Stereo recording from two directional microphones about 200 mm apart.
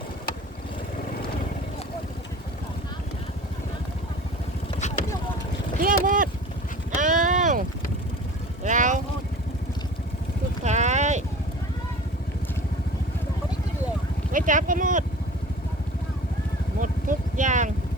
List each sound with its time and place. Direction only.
4.7 s vehicle: 35° left (ahead or behind)
5.8 s a sound: 45° right (ahead or behind)
6.9 s clip-clop: 40° right (ahead or behind)
8.6 s boat: 40° right (ahead or behind)
10.6 s boat: 35° right (ahead or behind)
14.3 s speech: 40° right (ahead or behind)
16.8 s a sound: 40° right (ahead or behind)